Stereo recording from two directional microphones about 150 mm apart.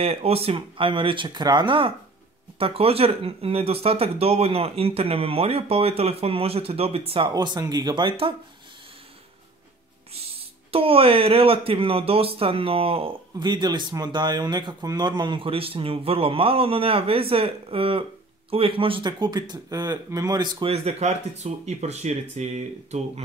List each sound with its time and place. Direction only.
0.0 s speech: 40° right (ahead or behind)
10.1 s speech: 40° right (ahead or behind)